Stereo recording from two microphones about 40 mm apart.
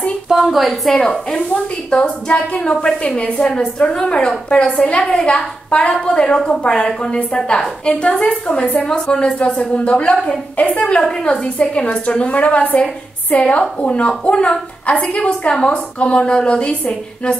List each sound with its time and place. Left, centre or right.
0.3 s a sound: centre
0.6 s a woman's voice: centre
1.3 s a woman's voice: left
4.8 s a woman's voice: left
9.4 s a woman's voice: left